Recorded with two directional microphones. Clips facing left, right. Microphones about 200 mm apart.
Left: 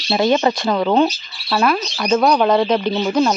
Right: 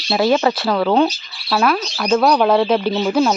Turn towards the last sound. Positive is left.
turn(degrees=0)  # may be behind; listen again after turning